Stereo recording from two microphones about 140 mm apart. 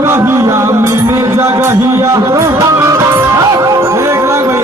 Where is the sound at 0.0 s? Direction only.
20° right (ahead or behind).